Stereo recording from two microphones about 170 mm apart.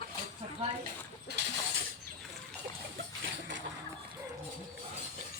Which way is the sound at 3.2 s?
90° right.